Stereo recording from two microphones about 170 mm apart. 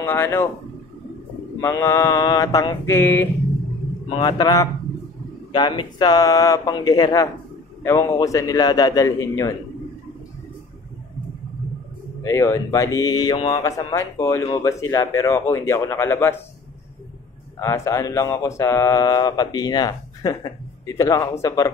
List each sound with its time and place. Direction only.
0.0 s speech: 15° left (ahead or behind)
1.6 s speech: 15° left (ahead or behind)
4.1 s speech: 25° left (ahead or behind)
12.2 s speech: 15° left (ahead or behind)
17.6 s speech: 15° left (ahead or behind)